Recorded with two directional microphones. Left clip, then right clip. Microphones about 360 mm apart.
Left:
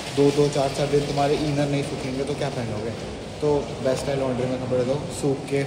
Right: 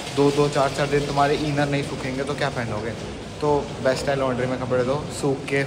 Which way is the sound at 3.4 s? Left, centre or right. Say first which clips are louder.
Right 2 dB; centre.